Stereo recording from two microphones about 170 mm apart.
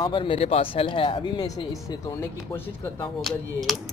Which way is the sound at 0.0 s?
30° left (ahead or behind).